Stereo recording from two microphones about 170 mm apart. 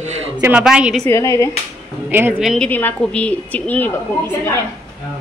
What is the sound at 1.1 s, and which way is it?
Speech, 20° left (ahead or behind).